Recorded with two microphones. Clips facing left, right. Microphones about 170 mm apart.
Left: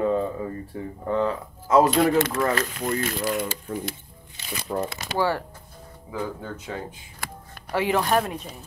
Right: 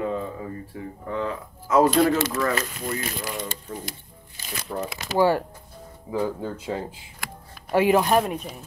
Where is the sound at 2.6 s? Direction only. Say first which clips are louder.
Left 3 dB; 50° left (ahead or behind).